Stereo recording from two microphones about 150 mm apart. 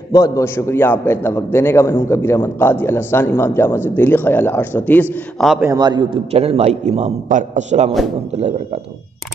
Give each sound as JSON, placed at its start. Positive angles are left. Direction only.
{"t": 0.1, "sound": "a man's voice", "side_deg": 20}
{"t": 5.1, "sound": "a man's voice", "side_deg": 0}
{"t": 5.8, "sound": "a man's voice", "side_deg": -30}
{"t": 6.3, "sound": "a man's voice", "side_deg": -45}